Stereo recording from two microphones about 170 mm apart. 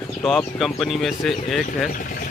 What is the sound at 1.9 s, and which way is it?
Speech, 50° left (ahead or behind).